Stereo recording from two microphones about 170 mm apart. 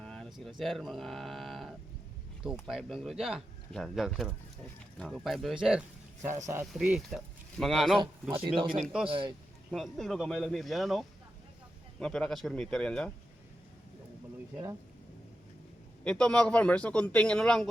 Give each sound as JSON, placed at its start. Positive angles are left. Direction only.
{"t": 0.0, "sound": "speech", "side_deg": 5}
{"t": 6.2, "sound": "speech", "side_deg": -15}
{"t": 6.7, "sound": "speech", "side_deg": -5}
{"t": 9.0, "sound": "speech", "side_deg": -30}
{"t": 9.7, "sound": "speech", "side_deg": 0}
{"t": 16.0, "sound": "speech", "side_deg": 5}